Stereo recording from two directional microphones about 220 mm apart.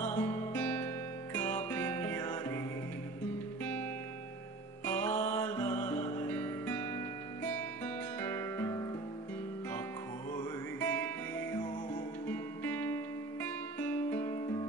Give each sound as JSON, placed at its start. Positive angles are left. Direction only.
{"t": 0.0, "sound": "guitar", "side_deg": 10}
{"t": 1.3, "sound": "music", "side_deg": 10}
{"t": 4.8, "sound": "music", "side_deg": 10}
{"t": 7.4, "sound": "guitar", "side_deg": 5}
{"t": 10.3, "sound": "music", "side_deg": 10}
{"t": 12.3, "sound": "music", "side_deg": 10}
{"t": 14.3, "sound": "music", "side_deg": 20}